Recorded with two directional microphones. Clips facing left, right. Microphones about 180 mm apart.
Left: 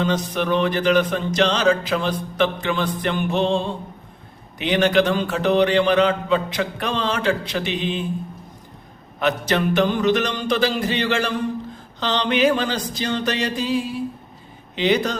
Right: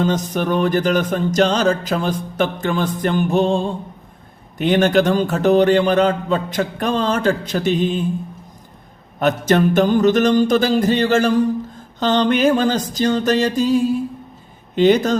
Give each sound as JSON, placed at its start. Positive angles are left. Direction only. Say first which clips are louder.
{"t": 0.0, "sound": "music", "louder": "right 3 dB", "side_deg": -45}
{"t": 9.1, "sound": "music", "louder": "right 5 dB", "side_deg": -45}